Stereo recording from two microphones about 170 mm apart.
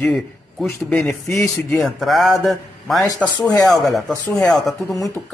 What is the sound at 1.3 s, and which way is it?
Speech, 15° left (ahead or behind).